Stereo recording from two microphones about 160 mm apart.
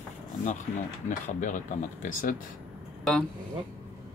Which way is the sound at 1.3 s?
50° left (ahead or behind).